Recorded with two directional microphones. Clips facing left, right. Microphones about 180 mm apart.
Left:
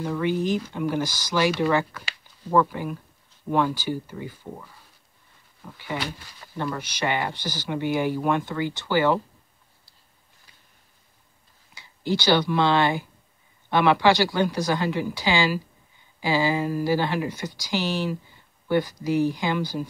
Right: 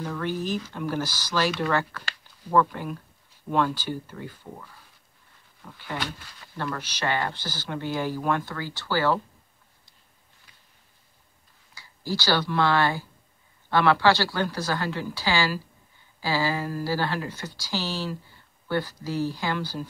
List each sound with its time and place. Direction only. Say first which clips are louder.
0.0 s speech: left 5 dB; 10° left (ahead or behind)
11.7 s speech: left 5 dB; 20° left (ahead or behind)